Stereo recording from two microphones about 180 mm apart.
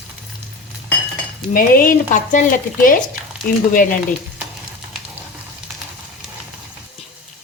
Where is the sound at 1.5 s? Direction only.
50° left (ahead or behind).